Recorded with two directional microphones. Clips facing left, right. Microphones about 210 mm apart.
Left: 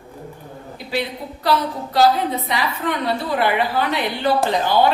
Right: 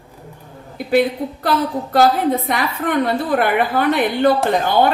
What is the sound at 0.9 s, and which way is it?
Speech, 50° right (ahead or behind).